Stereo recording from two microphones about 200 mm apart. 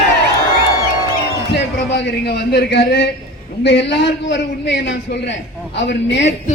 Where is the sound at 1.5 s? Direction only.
55° left (ahead or behind).